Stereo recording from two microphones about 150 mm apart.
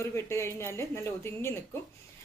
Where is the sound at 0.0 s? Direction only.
20° left (ahead or behind).